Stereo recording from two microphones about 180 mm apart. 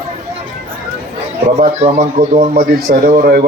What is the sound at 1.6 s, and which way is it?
Speech, 40° right (ahead or behind).